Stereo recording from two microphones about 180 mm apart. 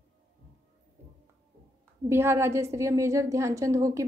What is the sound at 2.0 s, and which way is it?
A woman's voice, 15° right (ahead or behind).